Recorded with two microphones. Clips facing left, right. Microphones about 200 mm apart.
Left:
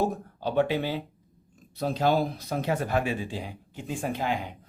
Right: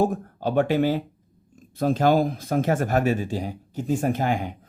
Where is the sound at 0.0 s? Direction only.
45° right (ahead or behind).